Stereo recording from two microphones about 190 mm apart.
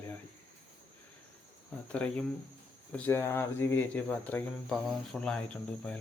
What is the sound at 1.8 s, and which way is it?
Speech, 5° left (ahead or behind).